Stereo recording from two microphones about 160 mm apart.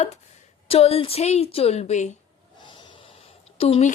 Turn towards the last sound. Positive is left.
turn(degrees=40)  # may be behind; listen again after turning